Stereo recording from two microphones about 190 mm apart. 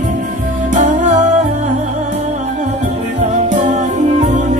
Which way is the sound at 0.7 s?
40° right (ahead or behind).